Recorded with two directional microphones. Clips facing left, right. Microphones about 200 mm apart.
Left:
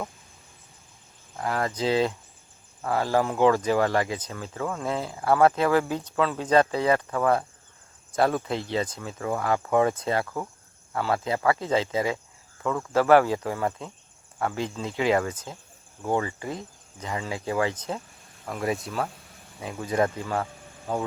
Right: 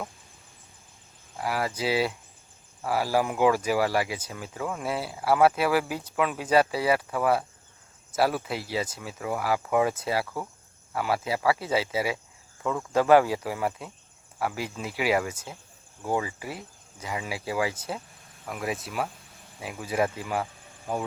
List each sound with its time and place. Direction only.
1.4 s speech: 10° right (ahead or behind)